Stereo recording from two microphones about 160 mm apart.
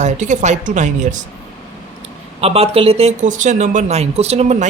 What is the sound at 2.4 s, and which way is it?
Speech, 40° right (ahead or behind).